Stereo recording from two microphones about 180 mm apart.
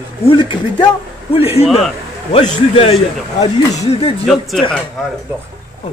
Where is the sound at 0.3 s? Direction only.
25° left (ahead or behind).